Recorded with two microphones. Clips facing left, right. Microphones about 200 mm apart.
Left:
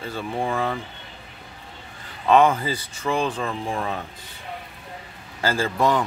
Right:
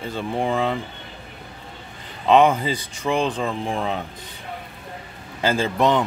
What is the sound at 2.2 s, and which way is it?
Speech, 20° right (ahead or behind).